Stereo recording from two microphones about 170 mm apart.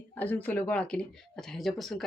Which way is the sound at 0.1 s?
10° left (ahead or behind).